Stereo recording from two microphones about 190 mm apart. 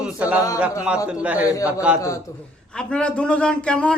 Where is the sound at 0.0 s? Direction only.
5° right (ahead or behind).